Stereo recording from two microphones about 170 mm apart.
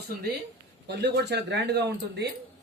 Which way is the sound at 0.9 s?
75° right (ahead or behind).